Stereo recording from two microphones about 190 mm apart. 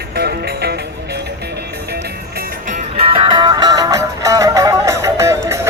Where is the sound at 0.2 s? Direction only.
60° right (ahead or behind).